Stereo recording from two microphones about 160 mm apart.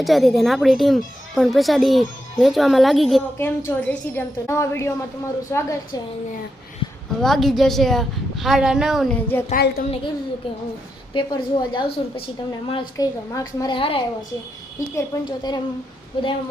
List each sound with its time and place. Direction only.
0.0 s a woman's voice: centre (ahead or behind)
3.3 s a woman's voice: 15° left (ahead or behind)
7.2 s a woman's voice: centre (ahead or behind)
9.1 s a woman's voice: 10° left (ahead or behind)
9.6 s a woman's voice: 75° left (ahead or behind)
11.1 s a woman's voice: 30° left (ahead or behind)
13.0 s a woman's voice: 25° left (ahead or behind)
14.8 s a woman's voice: 25° left (ahead or behind)